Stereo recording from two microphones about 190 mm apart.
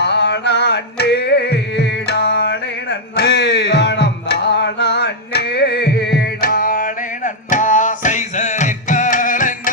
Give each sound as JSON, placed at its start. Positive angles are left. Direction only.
{"t": 0.0, "sound": "music", "side_deg": 65}